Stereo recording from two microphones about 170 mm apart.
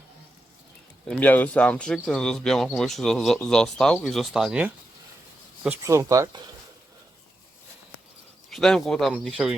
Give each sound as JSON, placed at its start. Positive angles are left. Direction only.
{"t": 1.0, "sound": "speech", "side_deg": 5}
{"t": 5.6, "sound": "speech", "side_deg": -15}
{"t": 8.4, "sound": "speech", "side_deg": 5}